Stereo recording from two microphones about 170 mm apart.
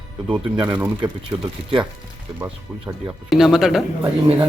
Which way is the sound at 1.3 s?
20° right (ahead or behind).